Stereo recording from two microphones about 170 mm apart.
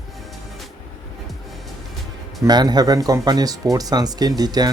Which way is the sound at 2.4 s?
25° right (ahead or behind).